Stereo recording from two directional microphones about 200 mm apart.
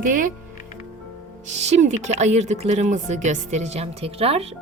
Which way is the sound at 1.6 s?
35° right (ahead or behind).